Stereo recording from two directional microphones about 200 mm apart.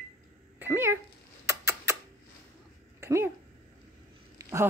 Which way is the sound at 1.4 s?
15° right (ahead or behind).